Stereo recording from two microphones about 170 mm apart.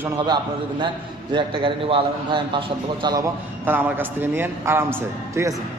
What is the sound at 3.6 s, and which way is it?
A man's voice, 10° right (ahead or behind).